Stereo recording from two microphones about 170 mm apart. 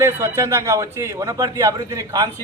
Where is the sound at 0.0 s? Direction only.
15° right (ahead or behind).